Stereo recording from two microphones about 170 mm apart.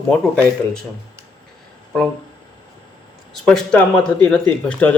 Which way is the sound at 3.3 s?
5° left (ahead or behind).